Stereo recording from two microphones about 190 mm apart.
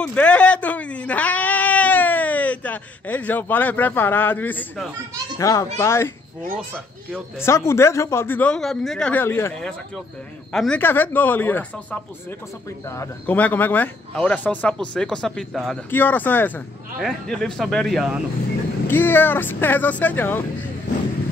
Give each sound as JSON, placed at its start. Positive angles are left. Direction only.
{"t": 0.0, "sound": "baby cry", "side_deg": 5}
{"t": 5.4, "sound": "speech", "side_deg": 15}
{"t": 7.4, "sound": "a man's voice", "side_deg": 15}
{"t": 18.9, "sound": "speech", "side_deg": 10}